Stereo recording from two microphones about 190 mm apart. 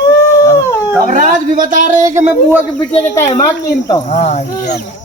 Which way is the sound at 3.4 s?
15° left (ahead or behind).